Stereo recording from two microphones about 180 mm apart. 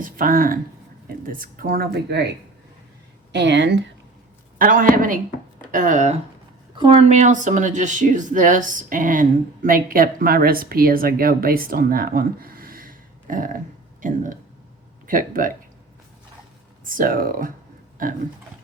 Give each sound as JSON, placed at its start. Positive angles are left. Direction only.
{"t": 0.0, "sound": "speech", "side_deg": -50}
{"t": 3.3, "sound": "speech", "side_deg": -75}
{"t": 4.5, "sound": "speech", "side_deg": -50}
{"t": 6.7, "sound": "speech", "side_deg": -30}
{"t": 15.0, "sound": "speech", "side_deg": -50}
{"t": 16.8, "sound": "speech", "side_deg": -50}